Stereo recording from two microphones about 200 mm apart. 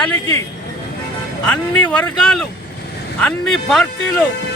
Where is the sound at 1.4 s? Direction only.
5° left (ahead or behind).